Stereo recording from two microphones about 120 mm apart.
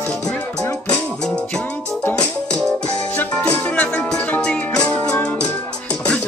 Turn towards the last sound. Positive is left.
turn(degrees=10)  # may be behind; listen again after turning